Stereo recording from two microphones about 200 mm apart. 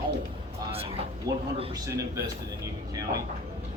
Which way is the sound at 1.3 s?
20° right (ahead or behind).